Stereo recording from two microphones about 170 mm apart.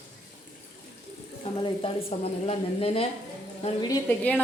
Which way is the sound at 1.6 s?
35° left (ahead or behind).